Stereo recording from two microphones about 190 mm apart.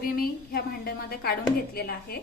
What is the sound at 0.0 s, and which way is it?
A woman's voice, 50° left (ahead or behind).